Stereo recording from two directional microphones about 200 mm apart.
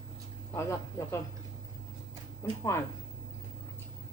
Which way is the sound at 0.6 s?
15° left (ahead or behind).